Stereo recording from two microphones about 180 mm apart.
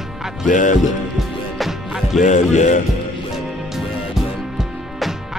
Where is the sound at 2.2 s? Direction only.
40° left (ahead or behind).